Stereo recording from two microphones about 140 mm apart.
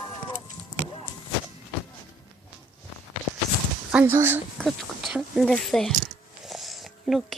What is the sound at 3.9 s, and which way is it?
Speech, 10° right (ahead or behind).